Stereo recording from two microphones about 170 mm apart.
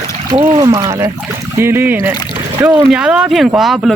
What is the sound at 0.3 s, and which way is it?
Speech, 25° right (ahead or behind).